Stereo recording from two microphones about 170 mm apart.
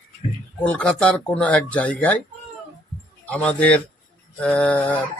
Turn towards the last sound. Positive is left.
turn(degrees=10)  # may be behind; listen again after turning